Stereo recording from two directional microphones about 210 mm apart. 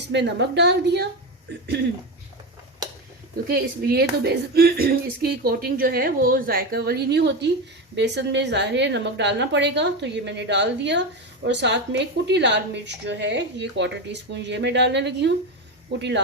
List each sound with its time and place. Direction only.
0.1 s a woman's voice: 55° right (ahead or behind)
3.5 s a woman's voice: 50° right (ahead or behind)